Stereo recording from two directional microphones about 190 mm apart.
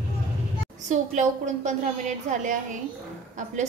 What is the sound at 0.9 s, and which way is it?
A woman's voice, 40° right (ahead or behind).